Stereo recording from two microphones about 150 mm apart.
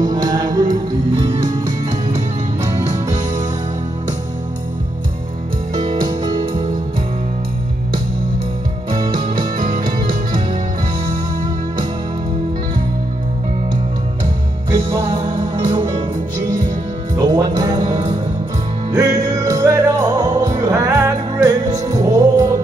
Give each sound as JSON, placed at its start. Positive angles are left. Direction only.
{"t": 0.0, "sound": "music", "side_deg": -25}
{"t": 1.2, "sound": "music", "side_deg": -50}
{"t": 6.0, "sound": "music", "side_deg": -30}
{"t": 8.9, "sound": "music", "side_deg": -30}
{"t": 9.3, "sound": "music", "side_deg": -65}
{"t": 14.7, "sound": "music", "side_deg": -20}
{"t": 17.1, "sound": "music", "side_deg": -25}
{"t": 18.9, "sound": "music", "side_deg": -25}